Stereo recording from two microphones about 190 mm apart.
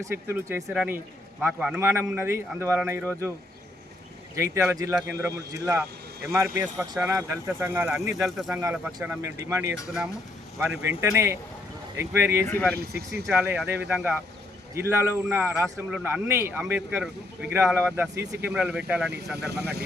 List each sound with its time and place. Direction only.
0.0 s a man's voice: 10° right (ahead or behind)
4.4 s a man's voice: 15° right (ahead or behind)
12.5 s speech: 10° left (ahead or behind)
12.9 s speech: 55° right (ahead or behind)
13.2 s a man's voice: 5° right (ahead or behind)
19.4 s speech: 60° right (ahead or behind)